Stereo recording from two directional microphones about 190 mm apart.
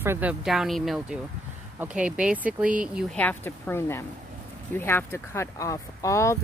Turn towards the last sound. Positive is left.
turn(degrees=15)  # may be behind; listen again after turning